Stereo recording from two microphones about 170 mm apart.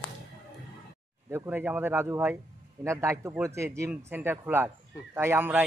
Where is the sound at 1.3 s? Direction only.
15° right (ahead or behind).